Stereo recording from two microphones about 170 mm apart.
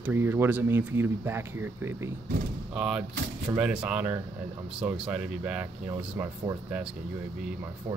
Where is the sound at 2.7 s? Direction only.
5° right (ahead or behind).